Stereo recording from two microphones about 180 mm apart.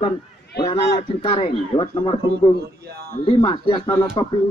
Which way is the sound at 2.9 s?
60° right (ahead or behind).